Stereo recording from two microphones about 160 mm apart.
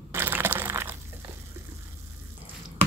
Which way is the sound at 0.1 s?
15° right (ahead or behind).